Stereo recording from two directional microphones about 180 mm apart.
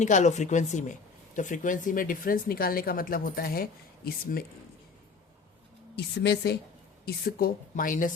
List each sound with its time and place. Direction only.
0.0 s a woman's voice: 40° left (ahead or behind)
6.0 s speech: 65° left (ahead or behind)
7.0 s speech: 55° left (ahead or behind)